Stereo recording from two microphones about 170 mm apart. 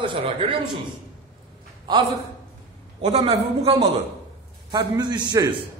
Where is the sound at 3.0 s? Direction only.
40° right (ahead or behind).